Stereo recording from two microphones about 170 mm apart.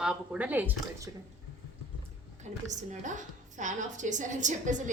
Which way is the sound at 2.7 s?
45° right (ahead or behind).